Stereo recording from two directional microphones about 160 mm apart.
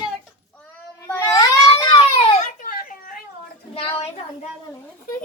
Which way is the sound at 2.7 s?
60° left (ahead or behind).